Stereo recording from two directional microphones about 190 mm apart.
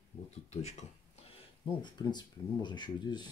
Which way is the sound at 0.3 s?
35° left (ahead or behind).